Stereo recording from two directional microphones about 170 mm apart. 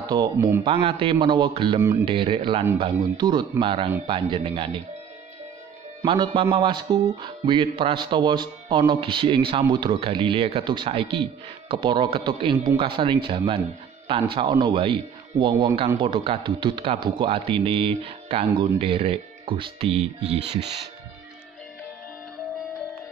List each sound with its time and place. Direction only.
0.0 s a man's voice: 25° right (ahead or behind)
6.0 s a man's voice: 30° right (ahead or behind)